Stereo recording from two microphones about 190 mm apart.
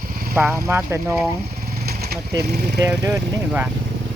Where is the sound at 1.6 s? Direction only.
55° right (ahead or behind).